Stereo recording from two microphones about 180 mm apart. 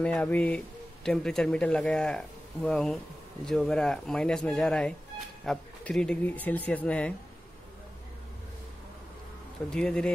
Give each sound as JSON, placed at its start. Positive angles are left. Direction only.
{"t": 0.0, "sound": "speech", "side_deg": 5}
{"t": 9.7, "sound": "speech", "side_deg": 5}